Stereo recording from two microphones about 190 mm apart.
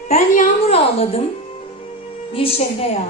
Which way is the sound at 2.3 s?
30° left (ahead or behind).